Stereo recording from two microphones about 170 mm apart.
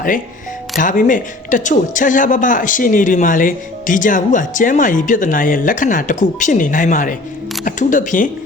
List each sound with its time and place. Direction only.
0.8 s speech: 50° left (ahead or behind)